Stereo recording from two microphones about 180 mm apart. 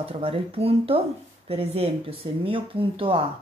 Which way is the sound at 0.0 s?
30° right (ahead or behind).